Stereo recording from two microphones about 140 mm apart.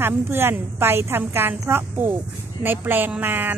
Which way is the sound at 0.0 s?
15° right (ahead or behind).